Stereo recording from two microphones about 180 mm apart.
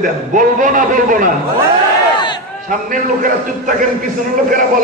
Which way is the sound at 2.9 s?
50° right (ahead or behind).